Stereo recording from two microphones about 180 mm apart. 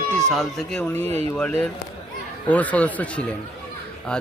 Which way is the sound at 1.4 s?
10° left (ahead or behind).